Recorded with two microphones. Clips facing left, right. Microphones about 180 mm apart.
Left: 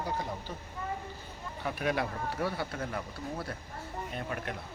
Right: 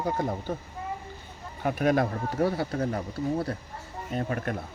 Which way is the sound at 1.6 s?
45° right (ahead or behind).